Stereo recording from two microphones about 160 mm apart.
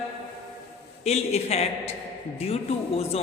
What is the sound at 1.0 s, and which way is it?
Speech, 40° left (ahead or behind).